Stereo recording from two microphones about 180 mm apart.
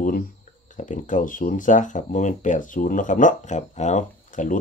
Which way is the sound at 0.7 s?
45° left (ahead or behind).